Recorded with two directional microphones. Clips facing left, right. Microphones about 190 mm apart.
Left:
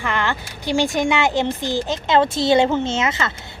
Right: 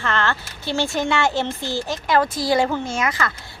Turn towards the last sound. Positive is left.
turn(degrees=25)  # may be behind; listen again after turning